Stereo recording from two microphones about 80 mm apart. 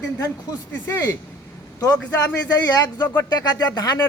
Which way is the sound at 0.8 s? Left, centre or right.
Left.